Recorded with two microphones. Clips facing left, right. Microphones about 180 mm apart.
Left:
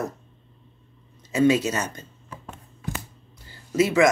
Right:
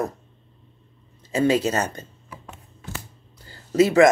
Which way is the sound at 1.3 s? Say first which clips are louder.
Even; 35° right (ahead or behind).